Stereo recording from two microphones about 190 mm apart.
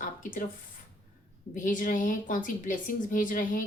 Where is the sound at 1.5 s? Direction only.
45° left (ahead or behind).